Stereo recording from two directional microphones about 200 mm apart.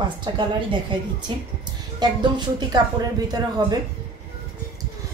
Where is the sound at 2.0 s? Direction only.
20° right (ahead or behind).